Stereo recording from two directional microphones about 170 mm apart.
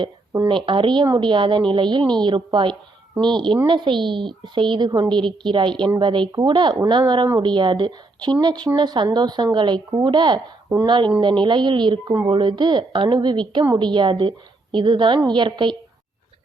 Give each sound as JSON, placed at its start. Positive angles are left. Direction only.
{"t": 0.0, "sound": "a woman's voice", "side_deg": -30}